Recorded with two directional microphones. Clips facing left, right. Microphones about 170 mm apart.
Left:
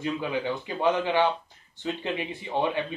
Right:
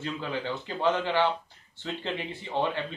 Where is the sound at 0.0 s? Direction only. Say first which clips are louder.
Left 4 dB; 15° left (ahead or behind).